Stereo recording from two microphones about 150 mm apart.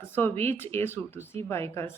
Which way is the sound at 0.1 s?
15° left (ahead or behind).